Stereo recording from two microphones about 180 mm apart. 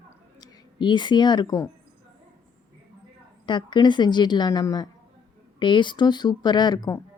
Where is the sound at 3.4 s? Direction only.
25° left (ahead or behind).